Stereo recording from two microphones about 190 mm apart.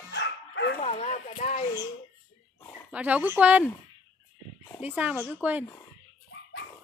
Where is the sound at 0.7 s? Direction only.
35° left (ahead or behind).